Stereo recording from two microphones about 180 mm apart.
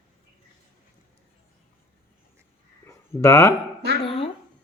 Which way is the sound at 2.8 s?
15° left (ahead or behind).